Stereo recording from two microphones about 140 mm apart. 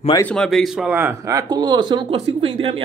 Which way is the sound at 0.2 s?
5° left (ahead or behind).